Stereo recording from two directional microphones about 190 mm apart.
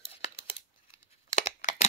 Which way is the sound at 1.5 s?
40° left (ahead or behind).